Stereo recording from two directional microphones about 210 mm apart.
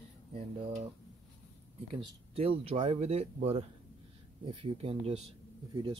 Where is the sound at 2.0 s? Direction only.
25° right (ahead or behind).